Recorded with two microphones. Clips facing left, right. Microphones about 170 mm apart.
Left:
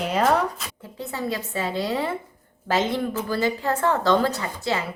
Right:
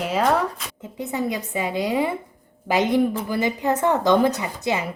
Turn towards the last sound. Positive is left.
turn(degrees=-15)  # may be behind; listen again after turning